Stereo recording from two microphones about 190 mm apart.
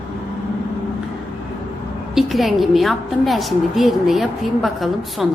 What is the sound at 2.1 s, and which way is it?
A woman's voice, centre (ahead or behind).